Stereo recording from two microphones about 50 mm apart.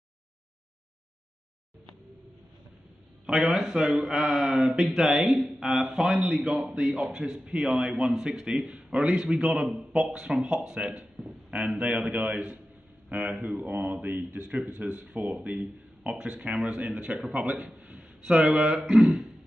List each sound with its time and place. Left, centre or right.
3.3 s speech: centre
9.7 s a sound: right
9.9 s a man's voice: centre
11.8 s speech: right
14.7 s speech: right
17.7 s a sound: right
18.2 s speech: centre